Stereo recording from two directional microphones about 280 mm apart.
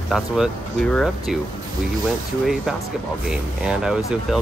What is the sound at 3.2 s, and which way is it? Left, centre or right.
Speech, centre.